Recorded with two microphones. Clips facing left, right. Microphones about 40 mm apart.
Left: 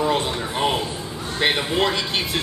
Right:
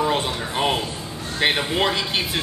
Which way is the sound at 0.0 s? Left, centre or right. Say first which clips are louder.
Left 1 dB; centre.